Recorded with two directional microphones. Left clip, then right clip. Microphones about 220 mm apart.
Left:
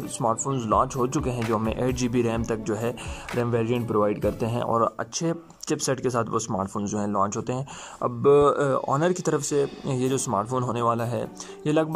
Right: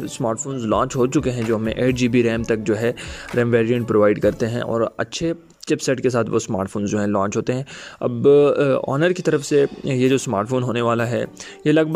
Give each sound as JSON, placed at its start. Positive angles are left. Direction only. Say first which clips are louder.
{"t": 0.2, "sound": "speech", "louder": "right 1 dB", "side_deg": -35}
{"t": 10.2, "sound": "speech", "louder": "right 4 dB", "side_deg": -40}
{"t": 10.7, "sound": "speech", "louder": "right 5 dB", "side_deg": -25}